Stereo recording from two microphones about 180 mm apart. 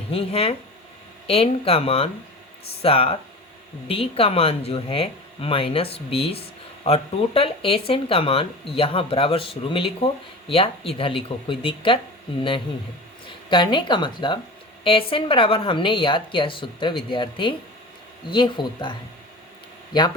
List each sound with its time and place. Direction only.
0.1 s a woman's voice: 35° left (ahead or behind)